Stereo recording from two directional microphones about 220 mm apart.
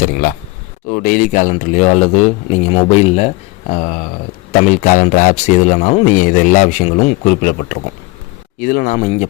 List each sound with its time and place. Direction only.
0.0 s speech: 40° left (ahead or behind)